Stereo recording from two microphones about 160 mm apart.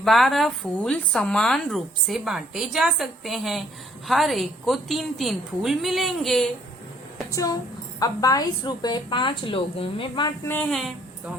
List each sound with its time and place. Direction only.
0.0 s a woman's voice: centre (ahead or behind)
7.3 s a woman's voice: 20° left (ahead or behind)
10.4 s speech: 10° left (ahead or behind)